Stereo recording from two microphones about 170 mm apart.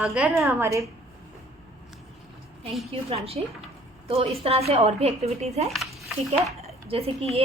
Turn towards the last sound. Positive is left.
turn(degrees=-35)  # may be behind; listen again after turning